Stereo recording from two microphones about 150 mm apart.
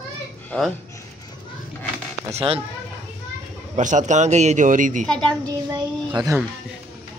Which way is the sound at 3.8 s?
55° right (ahead or behind).